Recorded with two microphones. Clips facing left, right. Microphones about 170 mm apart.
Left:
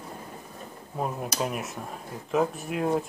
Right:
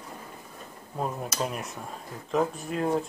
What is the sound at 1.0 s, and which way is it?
Speech, 5° left (ahead or behind).